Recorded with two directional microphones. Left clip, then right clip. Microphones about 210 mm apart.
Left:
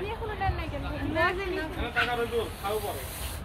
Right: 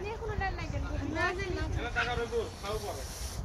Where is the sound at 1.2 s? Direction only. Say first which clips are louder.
Left 6 dB; 25° right (ahead or behind).